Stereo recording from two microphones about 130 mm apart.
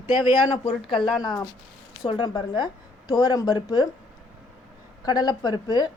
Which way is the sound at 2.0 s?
35° left (ahead or behind).